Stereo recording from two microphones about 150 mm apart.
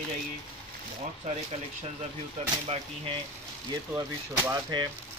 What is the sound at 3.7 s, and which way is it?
Speech, 25° right (ahead or behind).